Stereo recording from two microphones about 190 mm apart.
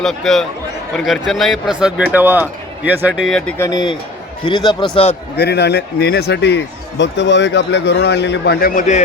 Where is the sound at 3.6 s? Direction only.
20° left (ahead or behind).